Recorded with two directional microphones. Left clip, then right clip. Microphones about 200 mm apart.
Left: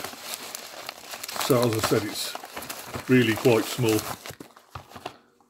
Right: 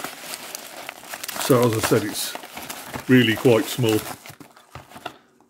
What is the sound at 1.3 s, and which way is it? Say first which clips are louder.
Crumpling: right 1 dB; 25° right (ahead or behind).